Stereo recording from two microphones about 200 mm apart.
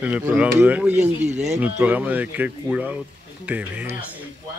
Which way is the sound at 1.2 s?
35° right (ahead or behind).